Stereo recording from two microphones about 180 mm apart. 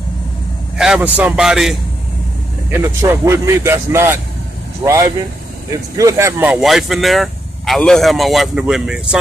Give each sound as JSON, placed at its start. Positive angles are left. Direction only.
{"t": 0.7, "sound": "speech", "side_deg": -5}
{"t": 2.8, "sound": "speech", "side_deg": -15}
{"t": 4.8, "sound": "speech", "side_deg": -25}